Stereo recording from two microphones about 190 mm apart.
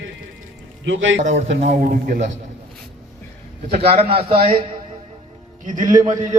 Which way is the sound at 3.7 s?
30° right (ahead or behind).